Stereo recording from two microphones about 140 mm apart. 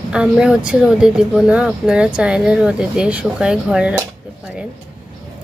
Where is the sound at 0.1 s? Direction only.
5° right (ahead or behind).